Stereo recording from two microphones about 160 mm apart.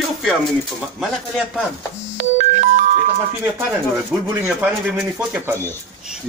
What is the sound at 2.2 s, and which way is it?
Ringtone, 45° right (ahead or behind).